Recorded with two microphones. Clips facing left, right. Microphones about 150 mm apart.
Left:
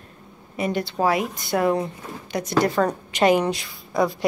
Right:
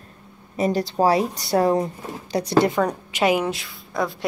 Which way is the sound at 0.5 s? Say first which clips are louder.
Right 3 dB; 40° right (ahead or behind).